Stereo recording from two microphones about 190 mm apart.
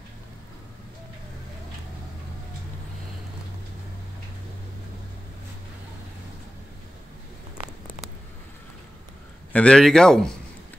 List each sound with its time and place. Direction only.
9.5 s speech: 5° left (ahead or behind)